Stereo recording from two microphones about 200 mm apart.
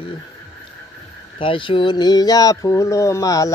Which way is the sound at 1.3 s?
25° left (ahead or behind).